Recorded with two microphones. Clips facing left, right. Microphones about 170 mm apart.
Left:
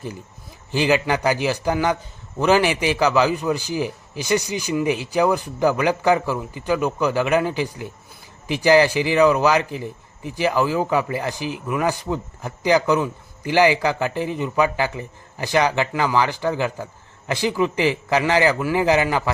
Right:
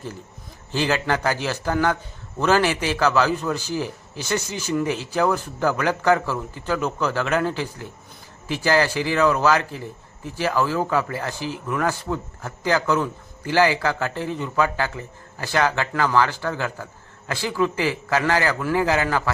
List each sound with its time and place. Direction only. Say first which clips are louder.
0.7 s speech: left 3 dB; 15° left (ahead or behind)